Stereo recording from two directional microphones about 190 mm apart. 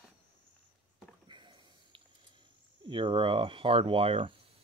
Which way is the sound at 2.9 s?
25° right (ahead or behind).